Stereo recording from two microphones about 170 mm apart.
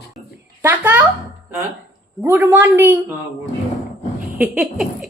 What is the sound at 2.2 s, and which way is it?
Speech, 15° right (ahead or behind).